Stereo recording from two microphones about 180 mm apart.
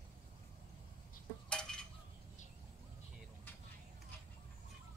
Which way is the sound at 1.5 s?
5° left (ahead or behind).